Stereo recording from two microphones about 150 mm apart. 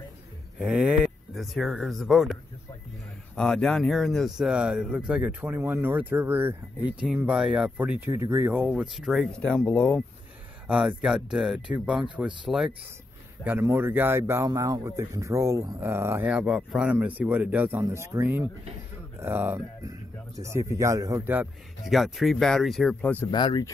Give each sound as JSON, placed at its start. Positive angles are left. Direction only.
{"t": 0.6, "sound": "speech", "side_deg": -5}
{"t": 3.3, "sound": "speech", "side_deg": 5}
{"t": 10.7, "sound": "a man's voice", "side_deg": -5}
{"t": 21.2, "sound": "a man's voice", "side_deg": -10}
{"t": 21.9, "sound": "speech", "side_deg": 0}
{"t": 23.3, "sound": "speech", "side_deg": 30}